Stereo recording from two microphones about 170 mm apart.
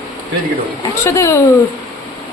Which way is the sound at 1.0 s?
15° left (ahead or behind).